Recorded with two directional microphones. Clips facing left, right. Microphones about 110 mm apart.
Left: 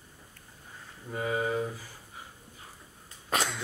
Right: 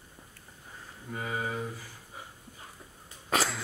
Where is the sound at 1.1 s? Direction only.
10° left (ahead or behind).